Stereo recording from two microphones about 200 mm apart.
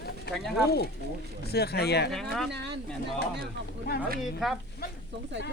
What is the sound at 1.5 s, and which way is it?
Speech, 55° left (ahead or behind).